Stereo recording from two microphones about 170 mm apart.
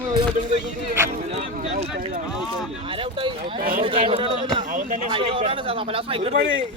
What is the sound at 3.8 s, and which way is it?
Speech, 30° right (ahead or behind).